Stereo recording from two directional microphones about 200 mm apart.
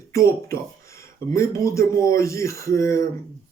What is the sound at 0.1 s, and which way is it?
Speech, 15° left (ahead or behind).